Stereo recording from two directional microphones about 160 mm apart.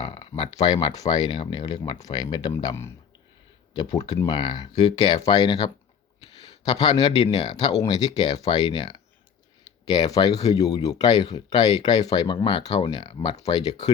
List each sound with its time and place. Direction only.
0.0 s a sound: 30° left (ahead or behind)
0.5 s speech: 25° left (ahead or behind)
3.9 s speech: 25° left (ahead or behind)